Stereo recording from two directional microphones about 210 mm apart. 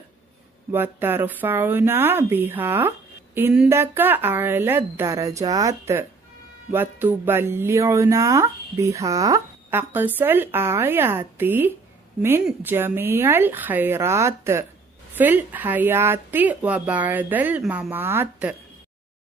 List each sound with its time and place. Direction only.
0.7 s speech: 10° right (ahead or behind)